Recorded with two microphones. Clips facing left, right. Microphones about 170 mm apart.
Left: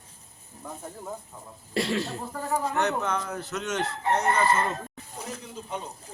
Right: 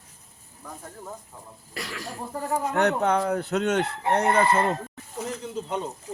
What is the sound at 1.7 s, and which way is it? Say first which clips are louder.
Speech: left 9 dB; 25° left (ahead or behind).